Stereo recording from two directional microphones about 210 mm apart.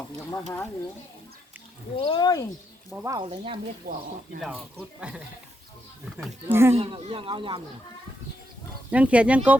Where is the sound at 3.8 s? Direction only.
45° right (ahead or behind).